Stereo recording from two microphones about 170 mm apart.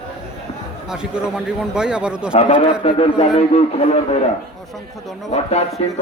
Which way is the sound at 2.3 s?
35° left (ahead or behind).